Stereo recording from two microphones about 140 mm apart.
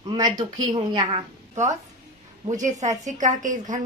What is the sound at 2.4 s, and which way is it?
A woman's voice, 65° right (ahead or behind).